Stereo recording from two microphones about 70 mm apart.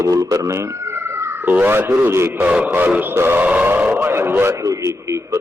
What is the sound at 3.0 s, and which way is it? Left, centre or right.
A man's voice, right.